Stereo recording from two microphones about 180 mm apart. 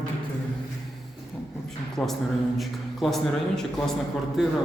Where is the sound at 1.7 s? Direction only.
Centre (ahead or behind).